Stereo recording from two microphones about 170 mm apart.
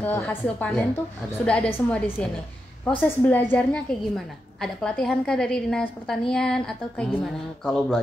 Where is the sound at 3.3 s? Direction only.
10° left (ahead or behind).